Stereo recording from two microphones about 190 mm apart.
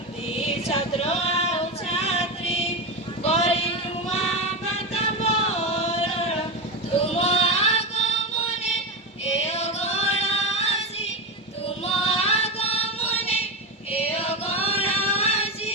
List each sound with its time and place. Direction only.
0.3 s female singing: 30° left (ahead or behind)
4.7 s a sound: 35° left (ahead or behind)
7.0 s music: 30° left (ahead or behind)
9.2 s music: 35° left (ahead or behind)
11.8 s female singing: 30° left (ahead or behind)
13.9 s music: 30° left (ahead or behind)